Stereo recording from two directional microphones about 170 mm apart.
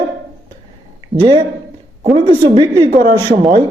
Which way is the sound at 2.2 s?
30° right (ahead or behind).